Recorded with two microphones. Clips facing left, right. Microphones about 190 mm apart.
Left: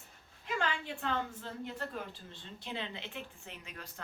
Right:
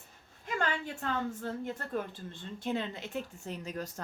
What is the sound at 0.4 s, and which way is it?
A woman's voice, 45° right (ahead or behind).